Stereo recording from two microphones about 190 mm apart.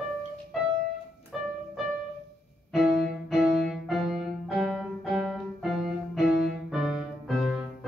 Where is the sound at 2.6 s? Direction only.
Centre (ahead or behind).